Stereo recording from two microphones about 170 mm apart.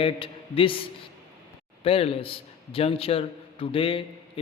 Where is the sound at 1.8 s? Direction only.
35° left (ahead or behind).